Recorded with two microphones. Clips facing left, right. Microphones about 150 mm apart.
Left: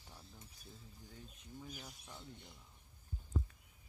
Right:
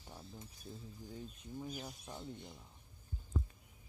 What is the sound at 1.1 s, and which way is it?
Speech, 25° right (ahead or behind).